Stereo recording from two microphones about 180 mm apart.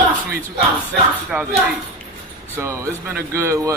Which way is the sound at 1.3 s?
10° right (ahead or behind).